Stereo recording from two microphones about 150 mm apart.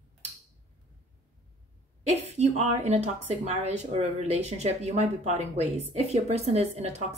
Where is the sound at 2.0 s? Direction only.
45° right (ahead or behind).